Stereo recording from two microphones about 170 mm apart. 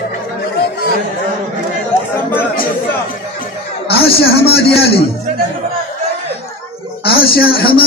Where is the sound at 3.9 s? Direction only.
65° left (ahead or behind).